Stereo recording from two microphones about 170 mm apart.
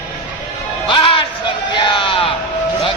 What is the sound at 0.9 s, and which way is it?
Music, 30° left (ahead or behind).